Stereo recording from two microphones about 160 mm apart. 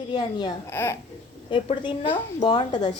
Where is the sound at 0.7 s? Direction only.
15° left (ahead or behind).